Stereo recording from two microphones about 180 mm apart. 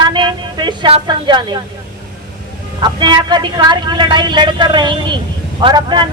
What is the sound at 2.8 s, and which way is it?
A man's voice, 25° right (ahead or behind).